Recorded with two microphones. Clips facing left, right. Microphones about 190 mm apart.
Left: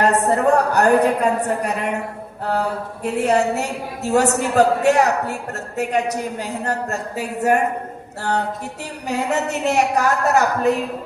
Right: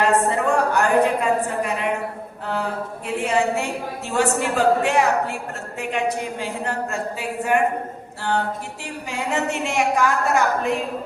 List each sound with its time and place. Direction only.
0.0 s a woman's voice: 40° left (ahead or behind)